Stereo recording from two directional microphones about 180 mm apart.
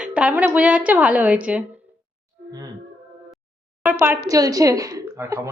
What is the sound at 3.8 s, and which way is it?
Speech, 10° right (ahead or behind).